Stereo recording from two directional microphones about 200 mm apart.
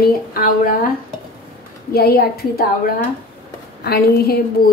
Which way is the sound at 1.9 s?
50° left (ahead or behind).